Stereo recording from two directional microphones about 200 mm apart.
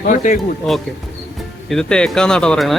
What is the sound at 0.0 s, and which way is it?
Speech, 40° left (ahead or behind).